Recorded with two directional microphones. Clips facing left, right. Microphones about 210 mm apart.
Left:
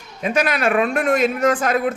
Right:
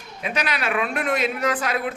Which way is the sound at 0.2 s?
45° left (ahead or behind).